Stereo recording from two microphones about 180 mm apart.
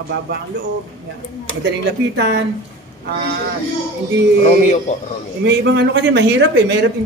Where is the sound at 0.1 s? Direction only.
70° right (ahead or behind).